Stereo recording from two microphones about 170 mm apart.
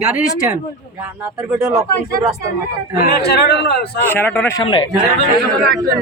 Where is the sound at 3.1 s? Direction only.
70° left (ahead or behind).